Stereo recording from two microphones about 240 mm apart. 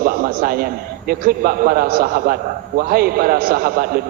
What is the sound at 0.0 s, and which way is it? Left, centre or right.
A man's voice, right.